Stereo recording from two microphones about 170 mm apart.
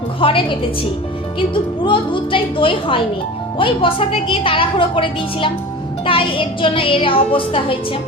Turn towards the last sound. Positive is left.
turn(degrees=30)  # may be behind; listen again after turning